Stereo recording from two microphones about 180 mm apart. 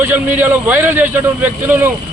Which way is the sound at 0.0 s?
10° right (ahead or behind).